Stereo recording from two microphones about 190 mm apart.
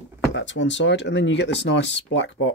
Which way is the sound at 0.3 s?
75° left (ahead or behind).